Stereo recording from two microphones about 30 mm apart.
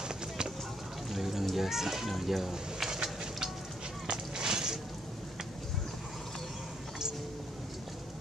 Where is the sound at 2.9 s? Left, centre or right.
Centre.